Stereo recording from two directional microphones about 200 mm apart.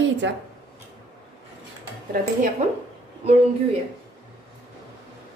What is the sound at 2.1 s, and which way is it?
Speech, 45° right (ahead or behind).